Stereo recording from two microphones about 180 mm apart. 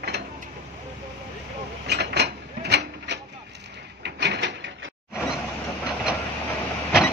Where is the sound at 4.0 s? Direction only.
75° right (ahead or behind).